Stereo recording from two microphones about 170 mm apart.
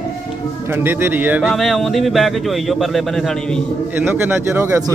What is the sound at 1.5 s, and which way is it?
Speech, centre (ahead or behind).